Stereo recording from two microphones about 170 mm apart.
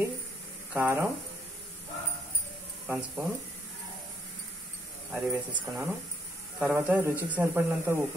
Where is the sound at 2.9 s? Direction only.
5° right (ahead or behind).